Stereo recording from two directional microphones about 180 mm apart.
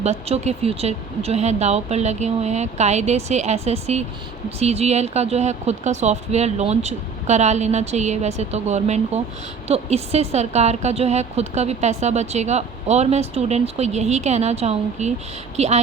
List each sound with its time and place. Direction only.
0.0 s a woman's voice: 40° right (ahead or behind)